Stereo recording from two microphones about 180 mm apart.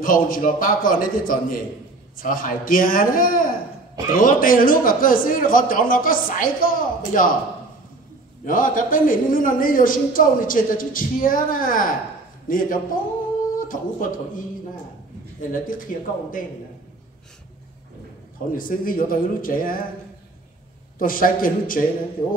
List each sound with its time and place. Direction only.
0.0 s a woman's voice: 50° left (ahead or behind)
8.5 s a woman's voice: 50° left (ahead or behind)
15.5 s a woman's voice: 50° left (ahead or behind)
18.5 s a woman's voice: 50° left (ahead or behind)
21.0 s a woman's voice: 50° left (ahead or behind)